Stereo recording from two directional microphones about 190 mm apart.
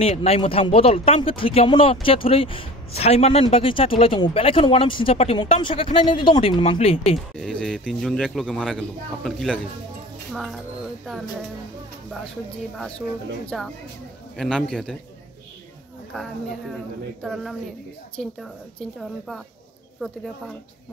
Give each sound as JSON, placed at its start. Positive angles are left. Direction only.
{"t": 0.0, "sound": "speech", "side_deg": 30}
{"t": 7.3, "sound": "a man's voice", "side_deg": 5}
{"t": 13.5, "sound": "a man's voice", "side_deg": 0}
{"t": 16.1, "sound": "a man's voice", "side_deg": 0}